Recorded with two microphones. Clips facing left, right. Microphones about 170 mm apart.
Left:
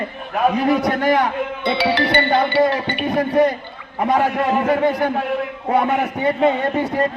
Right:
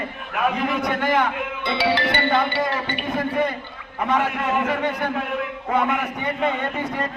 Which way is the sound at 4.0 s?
35° left (ahead or behind).